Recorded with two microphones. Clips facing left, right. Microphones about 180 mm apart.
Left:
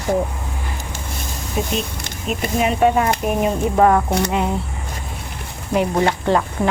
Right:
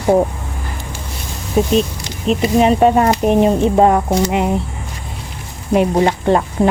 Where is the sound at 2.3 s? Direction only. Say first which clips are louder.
Right 7 dB; 30° right (ahead or behind).